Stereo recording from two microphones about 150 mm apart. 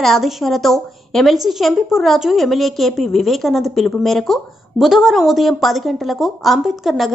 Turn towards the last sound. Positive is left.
turn(degrees=0)  # may be behind; listen again after turning